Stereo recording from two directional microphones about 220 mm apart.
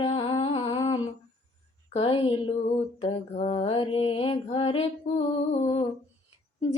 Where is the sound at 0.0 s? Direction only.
25° left (ahead or behind).